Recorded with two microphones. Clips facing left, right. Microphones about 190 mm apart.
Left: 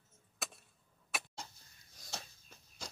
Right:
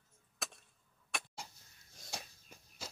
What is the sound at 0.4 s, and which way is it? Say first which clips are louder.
Chop: even; centre (ahead or behind).